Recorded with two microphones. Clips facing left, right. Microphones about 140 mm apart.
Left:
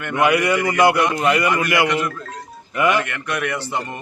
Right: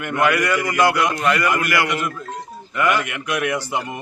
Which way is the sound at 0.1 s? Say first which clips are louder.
Left 2 dB; 20° left (ahead or behind).